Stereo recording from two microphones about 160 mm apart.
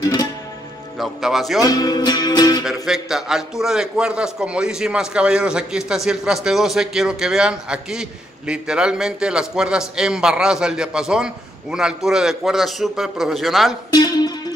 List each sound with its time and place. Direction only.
0.9 s a man's voice: centre (ahead or behind)
1.6 s music: 25° left (ahead or behind)
2.6 s a man's voice: centre (ahead or behind)
13.9 s music: 25° left (ahead or behind)